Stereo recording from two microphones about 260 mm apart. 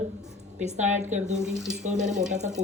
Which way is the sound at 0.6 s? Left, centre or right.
Right.